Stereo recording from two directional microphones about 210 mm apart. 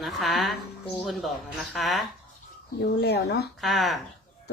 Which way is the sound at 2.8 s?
55° left (ahead or behind).